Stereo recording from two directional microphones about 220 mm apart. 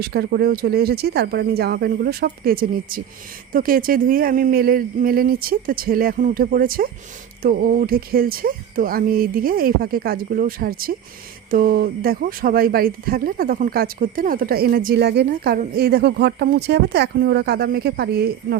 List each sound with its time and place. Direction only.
0.0 s speech: 45° right (ahead or behind)